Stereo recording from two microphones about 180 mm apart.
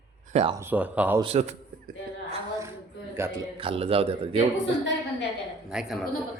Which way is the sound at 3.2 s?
15° right (ahead or behind).